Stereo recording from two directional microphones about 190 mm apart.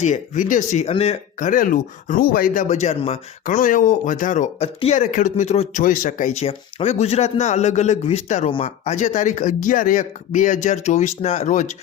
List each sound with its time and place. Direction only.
0.0 s speech: 40° left (ahead or behind)